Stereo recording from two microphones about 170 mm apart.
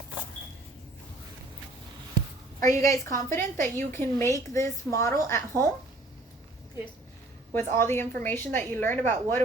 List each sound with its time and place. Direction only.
2.6 s a woman's voice: 50° right (ahead or behind)
2.8 s a woman's voice: 20° left (ahead or behind)
7.5 s a woman's voice: 15° left (ahead or behind)